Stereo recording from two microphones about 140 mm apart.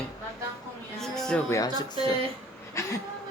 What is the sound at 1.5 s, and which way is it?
Speech, 25° left (ahead or behind).